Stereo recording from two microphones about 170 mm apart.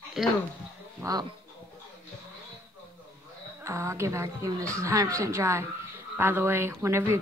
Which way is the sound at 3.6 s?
15° right (ahead or behind).